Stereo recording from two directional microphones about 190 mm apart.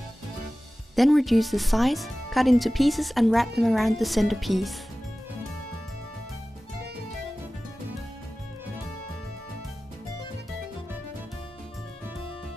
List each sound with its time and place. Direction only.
0.9 s speech: centre (ahead or behind)